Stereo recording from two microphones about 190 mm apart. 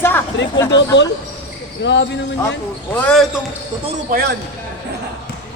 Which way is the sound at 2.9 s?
5° left (ahead or behind).